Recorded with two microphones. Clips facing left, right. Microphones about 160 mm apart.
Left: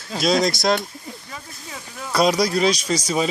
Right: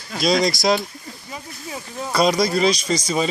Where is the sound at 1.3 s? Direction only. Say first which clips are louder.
Right 4 dB; 25° right (ahead or behind).